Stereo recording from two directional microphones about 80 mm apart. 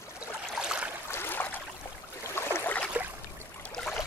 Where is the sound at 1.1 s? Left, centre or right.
Left.